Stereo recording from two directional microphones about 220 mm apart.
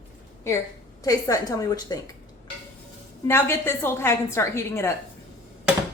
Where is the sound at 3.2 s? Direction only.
10° left (ahead or behind).